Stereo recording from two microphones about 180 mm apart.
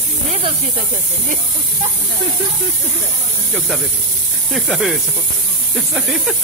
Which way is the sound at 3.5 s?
Centre (ahead or behind).